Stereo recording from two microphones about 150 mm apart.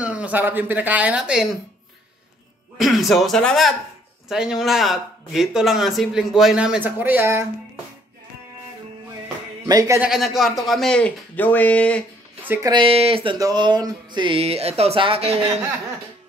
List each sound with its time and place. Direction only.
0.0 s speech: 10° right (ahead or behind)
2.8 s speech: centre (ahead or behind)
9.7 s speech: 25° right (ahead or behind)
9.9 s speech: 5° right (ahead or behind)
12.6 s music: 35° right (ahead or behind)